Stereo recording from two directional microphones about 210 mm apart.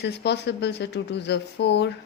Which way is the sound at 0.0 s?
55° left (ahead or behind).